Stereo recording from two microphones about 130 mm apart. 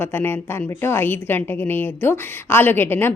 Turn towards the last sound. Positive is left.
turn(degrees=15)  # may be behind; listen again after turning